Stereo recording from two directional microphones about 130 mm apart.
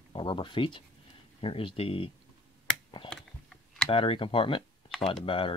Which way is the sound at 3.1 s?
5° left (ahead or behind).